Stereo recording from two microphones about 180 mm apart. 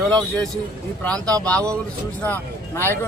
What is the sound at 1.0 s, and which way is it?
Speech, 5° left (ahead or behind).